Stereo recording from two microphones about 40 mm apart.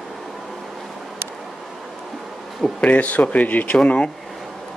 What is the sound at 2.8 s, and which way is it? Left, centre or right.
Speech, left.